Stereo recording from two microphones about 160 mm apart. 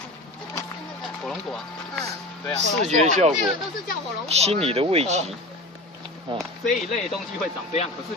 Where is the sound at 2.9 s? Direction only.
45° right (ahead or behind).